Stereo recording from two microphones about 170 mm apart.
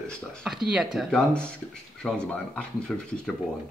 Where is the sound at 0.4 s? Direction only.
Centre (ahead or behind).